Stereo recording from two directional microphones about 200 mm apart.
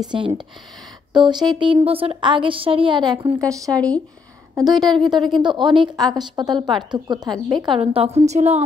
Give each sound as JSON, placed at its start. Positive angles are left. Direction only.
{"t": 0.0, "sound": "a woman's voice", "side_deg": -25}
{"t": 3.7, "sound": "speech", "side_deg": 5}
{"t": 4.6, "sound": "a woman's voice", "side_deg": -20}
{"t": 4.8, "sound": "speech", "side_deg": 0}
{"t": 5.4, "sound": "a woman's voice", "side_deg": -25}